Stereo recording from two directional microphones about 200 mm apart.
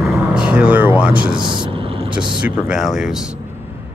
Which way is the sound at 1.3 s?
25° right (ahead or behind).